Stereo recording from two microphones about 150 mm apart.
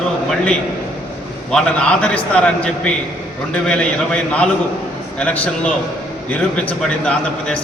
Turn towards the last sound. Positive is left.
turn(degrees=5)  # may be behind; listen again after turning